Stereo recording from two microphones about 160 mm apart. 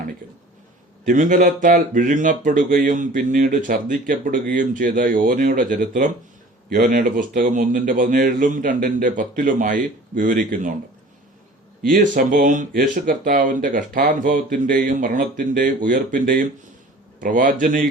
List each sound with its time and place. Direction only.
1.0 s speech: 55° right (ahead or behind)
11.8 s speech: 65° right (ahead or behind)